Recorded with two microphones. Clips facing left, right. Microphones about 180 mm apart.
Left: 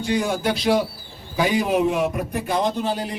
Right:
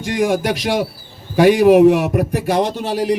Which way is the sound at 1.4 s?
80° right.